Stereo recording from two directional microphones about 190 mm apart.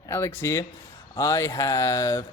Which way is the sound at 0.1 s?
15° left (ahead or behind).